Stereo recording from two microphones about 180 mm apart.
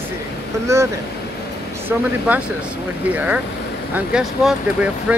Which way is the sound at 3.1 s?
10° right (ahead or behind).